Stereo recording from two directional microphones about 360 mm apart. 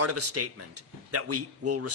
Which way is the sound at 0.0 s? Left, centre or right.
Right.